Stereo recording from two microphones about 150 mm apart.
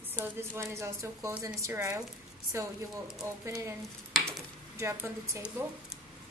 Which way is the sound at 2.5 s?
20° right (ahead or behind).